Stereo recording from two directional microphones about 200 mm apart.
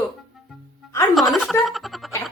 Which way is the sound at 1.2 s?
Centre (ahead or behind).